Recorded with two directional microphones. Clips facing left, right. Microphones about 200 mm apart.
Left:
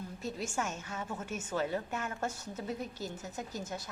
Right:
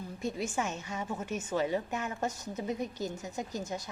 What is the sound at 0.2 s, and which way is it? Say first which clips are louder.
A woman's voice: right 4 dB; 10° right (ahead or behind).